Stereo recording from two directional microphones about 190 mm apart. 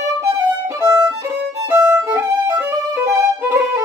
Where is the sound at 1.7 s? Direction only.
15° right (ahead or behind).